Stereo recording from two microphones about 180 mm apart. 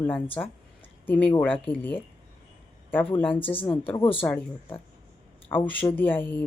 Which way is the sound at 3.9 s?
25° left (ahead or behind).